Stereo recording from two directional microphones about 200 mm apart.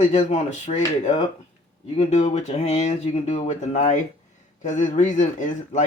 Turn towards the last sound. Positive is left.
turn(degrees=35)  # may be behind; listen again after turning